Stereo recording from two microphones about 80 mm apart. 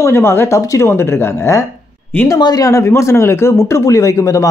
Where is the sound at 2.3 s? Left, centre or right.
Left.